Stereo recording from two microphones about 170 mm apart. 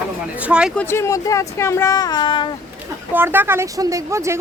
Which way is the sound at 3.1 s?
10° right (ahead or behind).